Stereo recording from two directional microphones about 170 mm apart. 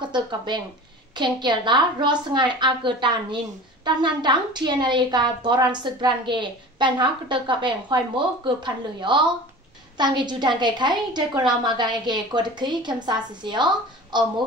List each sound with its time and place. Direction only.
0.0 s a woman's voice: 25° right (ahead or behind)